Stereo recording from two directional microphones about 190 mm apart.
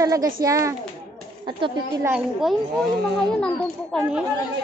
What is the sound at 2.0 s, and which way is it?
A woman's voice, 5° right (ahead or behind).